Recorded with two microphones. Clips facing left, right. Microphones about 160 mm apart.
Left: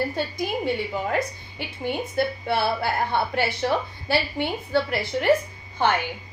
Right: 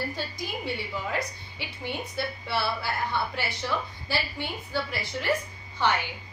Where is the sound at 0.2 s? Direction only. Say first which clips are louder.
Left 8 dB; 55° left (ahead or behind).